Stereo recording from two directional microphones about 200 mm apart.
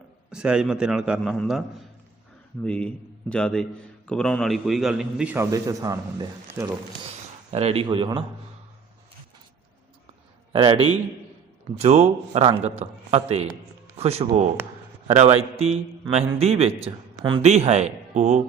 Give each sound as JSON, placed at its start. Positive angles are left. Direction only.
{"t": 0.3, "sound": "a man's voice", "side_deg": -5}
{"t": 2.6, "sound": "a man's voice", "side_deg": 5}
{"t": 7.5, "sound": "speech", "side_deg": -30}
{"t": 10.5, "sound": "a man's voice", "side_deg": -25}